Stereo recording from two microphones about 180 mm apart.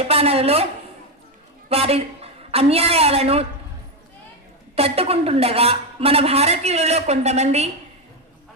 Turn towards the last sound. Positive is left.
turn(degrees=-35)  # may be behind; listen again after turning